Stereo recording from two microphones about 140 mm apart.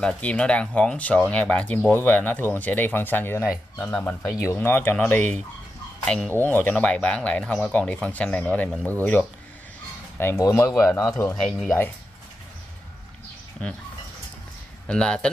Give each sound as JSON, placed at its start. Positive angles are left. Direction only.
{"t": 0.0, "sound": "speech", "side_deg": 10}
{"t": 14.9, "sound": "speech", "side_deg": 5}